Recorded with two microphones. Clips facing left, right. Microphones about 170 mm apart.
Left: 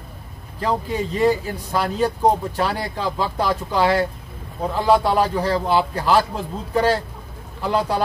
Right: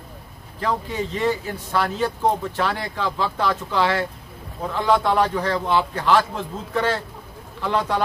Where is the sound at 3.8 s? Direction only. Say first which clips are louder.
Left 4 dB; 35° left (ahead or behind).